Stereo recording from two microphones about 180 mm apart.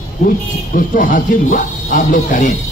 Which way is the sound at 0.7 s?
50° left (ahead or behind).